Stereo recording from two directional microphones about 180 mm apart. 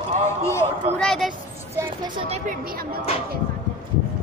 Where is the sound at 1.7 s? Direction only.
15° right (ahead or behind).